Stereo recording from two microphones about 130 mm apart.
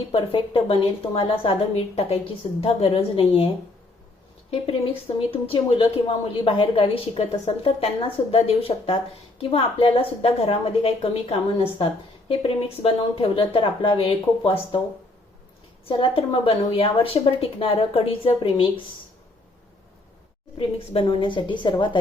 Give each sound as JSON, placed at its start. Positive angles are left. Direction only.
{"t": 0.1, "sound": "speech", "side_deg": 45}
{"t": 4.6, "sound": "speech", "side_deg": 50}
{"t": 15.9, "sound": "speech", "side_deg": 40}
{"t": 20.6, "sound": "a woman's voice", "side_deg": 45}